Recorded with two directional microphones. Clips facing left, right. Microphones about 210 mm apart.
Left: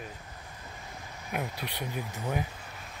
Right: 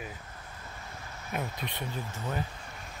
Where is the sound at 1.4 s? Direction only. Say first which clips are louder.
Even; 10° left (ahead or behind).